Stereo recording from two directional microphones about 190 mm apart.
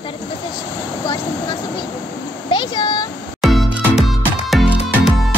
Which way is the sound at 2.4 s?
25° left (ahead or behind).